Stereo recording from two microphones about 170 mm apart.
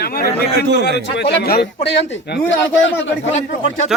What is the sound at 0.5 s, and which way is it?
Speech, 80° right.